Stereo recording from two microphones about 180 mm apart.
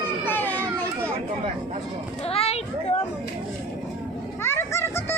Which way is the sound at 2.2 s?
35° left (ahead or behind).